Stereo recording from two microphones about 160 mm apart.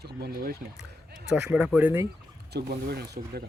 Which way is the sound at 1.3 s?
5° right (ahead or behind).